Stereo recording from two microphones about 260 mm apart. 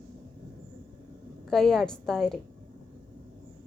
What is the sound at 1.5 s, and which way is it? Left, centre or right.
Speech, centre.